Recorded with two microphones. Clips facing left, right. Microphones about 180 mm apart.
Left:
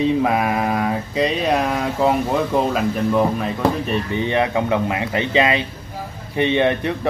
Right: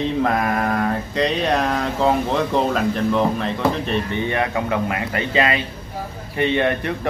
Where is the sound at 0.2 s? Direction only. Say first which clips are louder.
Left 1 dB; 10° left (ahead or behind).